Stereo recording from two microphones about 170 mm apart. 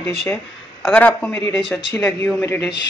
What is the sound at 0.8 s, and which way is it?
Speech, 5° left (ahead or behind).